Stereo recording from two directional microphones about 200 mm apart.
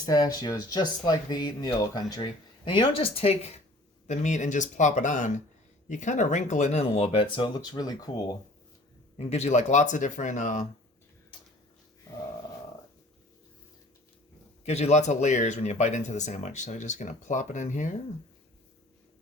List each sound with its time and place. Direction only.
0.0 s speech: 20° left (ahead or behind)
9.1 s speech: 30° left (ahead or behind)
14.6 s speech: 35° left (ahead or behind)